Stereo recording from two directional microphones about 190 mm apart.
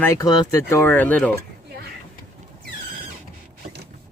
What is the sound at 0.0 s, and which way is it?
A man's voice, 15° left (ahead or behind).